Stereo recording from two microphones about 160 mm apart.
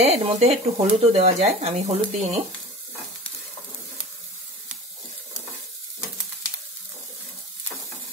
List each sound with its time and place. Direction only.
0.0 s speech: 40° right (ahead or behind)